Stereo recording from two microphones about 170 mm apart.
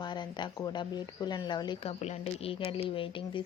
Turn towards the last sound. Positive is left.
turn(degrees=30)  # may be behind; listen again after turning